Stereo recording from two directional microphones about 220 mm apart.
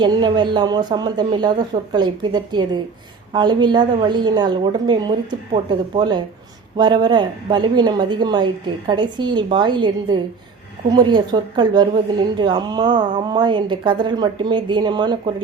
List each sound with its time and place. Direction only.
0.0 s speech: 20° right (ahead or behind)